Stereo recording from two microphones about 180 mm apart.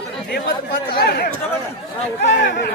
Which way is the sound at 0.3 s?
55° left (ahead or behind).